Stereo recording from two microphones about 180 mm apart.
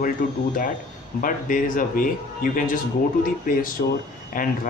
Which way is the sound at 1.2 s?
50° left (ahead or behind).